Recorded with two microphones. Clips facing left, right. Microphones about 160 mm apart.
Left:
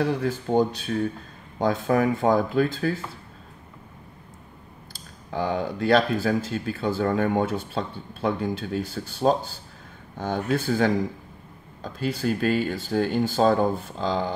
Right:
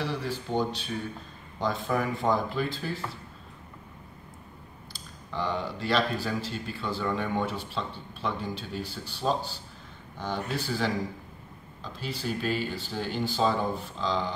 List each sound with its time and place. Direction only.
0.0 s speech: 50° left (ahead or behind)
5.3 s speech: 50° left (ahead or behind)